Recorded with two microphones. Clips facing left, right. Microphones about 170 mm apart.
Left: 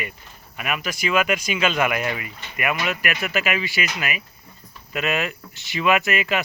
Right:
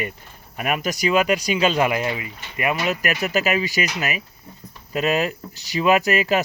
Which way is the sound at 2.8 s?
40° right (ahead or behind).